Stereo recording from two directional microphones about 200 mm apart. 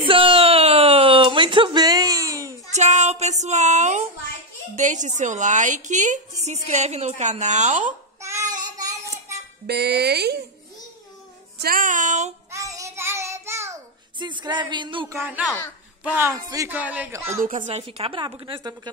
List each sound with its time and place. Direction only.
0.0 s a sound: 25° right (ahead or behind)
2.7 s music: 35° right (ahead or behind)
4.7 s a woman's voice: 40° right (ahead or behind)
8.2 s child singing: 15° right (ahead or behind)
9.7 s speech: 55° right (ahead or behind)
11.5 s a woman's voice: 45° right (ahead or behind)
12.4 s child singing: 15° right (ahead or behind)
15.1 s a man's voice: 10° right (ahead or behind)
17.3 s a woman's voice: 40° right (ahead or behind); by 18.8 s 20° right (ahead or behind)